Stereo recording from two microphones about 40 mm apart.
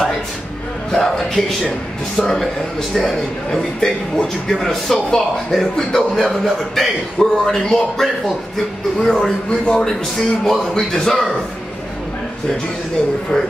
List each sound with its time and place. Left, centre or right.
0.9 s a man's voice: centre
9.5 s a man's voice: left
10.4 s a man's voice: centre